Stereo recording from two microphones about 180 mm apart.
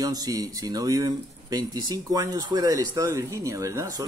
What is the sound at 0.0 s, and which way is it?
Speech, 20° right (ahead or behind).